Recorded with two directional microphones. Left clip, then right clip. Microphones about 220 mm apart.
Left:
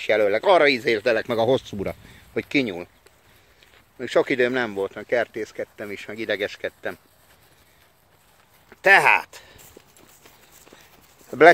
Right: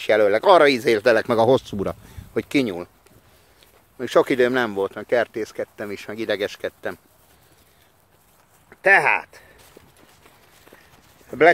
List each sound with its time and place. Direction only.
0.0 s speech: 20° right (ahead or behind)
4.0 s speech: 20° right (ahead or behind)
8.6 s speech: 5° left (ahead or behind)
11.2 s speech: 15° left (ahead or behind)